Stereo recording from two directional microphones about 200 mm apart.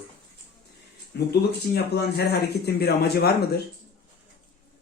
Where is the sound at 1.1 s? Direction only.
55° left (ahead or behind).